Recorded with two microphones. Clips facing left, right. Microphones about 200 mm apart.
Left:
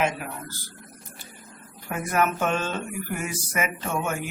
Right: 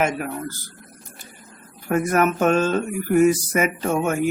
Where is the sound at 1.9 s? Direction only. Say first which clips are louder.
Right 6 dB; 45° right (ahead or behind).